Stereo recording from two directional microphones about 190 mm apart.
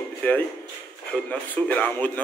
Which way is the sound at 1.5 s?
10° left (ahead or behind).